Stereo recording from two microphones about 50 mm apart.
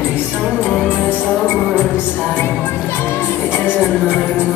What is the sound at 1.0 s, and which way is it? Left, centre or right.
Music, left.